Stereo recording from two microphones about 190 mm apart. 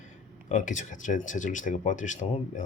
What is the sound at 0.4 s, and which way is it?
Speech, 40° left (ahead or behind).